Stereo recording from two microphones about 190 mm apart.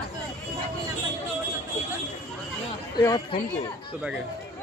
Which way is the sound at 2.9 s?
20° left (ahead or behind).